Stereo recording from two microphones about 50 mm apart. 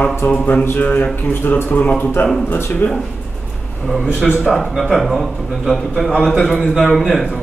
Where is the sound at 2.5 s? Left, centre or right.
Left.